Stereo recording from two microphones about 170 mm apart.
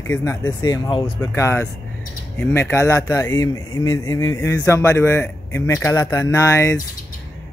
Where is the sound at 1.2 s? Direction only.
15° left (ahead or behind).